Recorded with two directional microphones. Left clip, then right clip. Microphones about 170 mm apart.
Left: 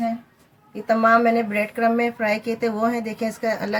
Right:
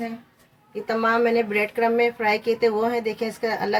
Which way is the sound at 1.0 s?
45° right (ahead or behind).